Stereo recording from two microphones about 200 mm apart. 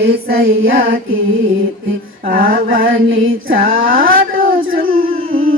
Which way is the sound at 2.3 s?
45° right (ahead or behind).